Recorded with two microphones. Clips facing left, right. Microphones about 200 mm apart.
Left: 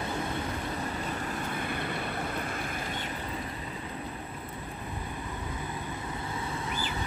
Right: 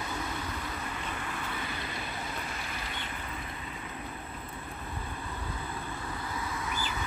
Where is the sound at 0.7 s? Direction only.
40° left (ahead or behind).